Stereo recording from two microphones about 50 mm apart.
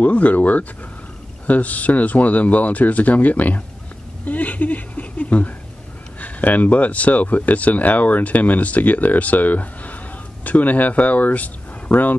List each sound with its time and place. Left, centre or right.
0.0 s a woman's voice: left